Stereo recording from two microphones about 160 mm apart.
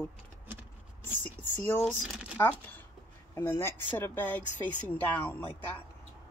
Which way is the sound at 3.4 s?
15° left (ahead or behind).